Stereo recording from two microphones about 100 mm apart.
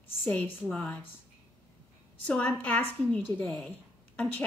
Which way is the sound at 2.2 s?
15° left (ahead or behind).